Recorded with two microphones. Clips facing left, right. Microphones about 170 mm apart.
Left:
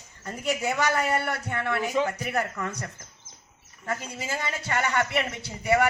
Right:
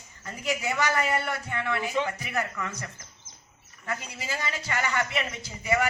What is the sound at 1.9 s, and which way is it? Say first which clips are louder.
A man's voice: left 3 dB; 40° left (ahead or behind).